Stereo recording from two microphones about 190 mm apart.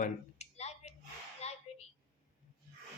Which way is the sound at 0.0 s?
35° left (ahead or behind).